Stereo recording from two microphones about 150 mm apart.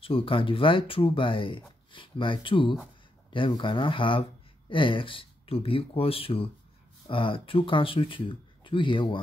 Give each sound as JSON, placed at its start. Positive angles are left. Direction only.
{"t": 0.0, "sound": "speech", "side_deg": 35}